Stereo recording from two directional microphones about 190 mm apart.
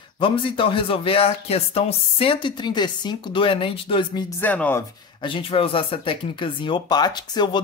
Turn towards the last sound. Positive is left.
turn(degrees=20)  # may be behind; listen again after turning